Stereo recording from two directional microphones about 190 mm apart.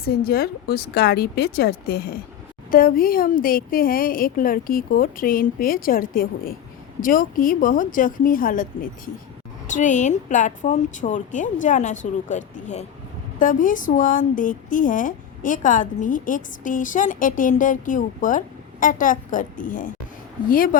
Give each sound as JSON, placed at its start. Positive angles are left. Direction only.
{"t": 0.0, "sound": "a woman's voice", "side_deg": 50}